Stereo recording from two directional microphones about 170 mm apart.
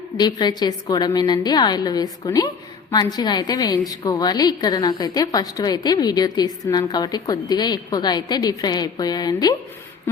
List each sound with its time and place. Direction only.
0.2 s a woman's voice: 25° left (ahead or behind)